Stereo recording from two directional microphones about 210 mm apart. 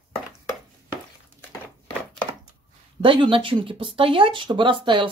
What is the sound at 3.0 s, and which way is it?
Speech, 25° right (ahead or behind).